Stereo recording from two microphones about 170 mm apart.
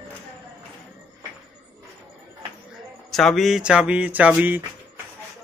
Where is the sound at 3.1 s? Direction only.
Centre (ahead or behind).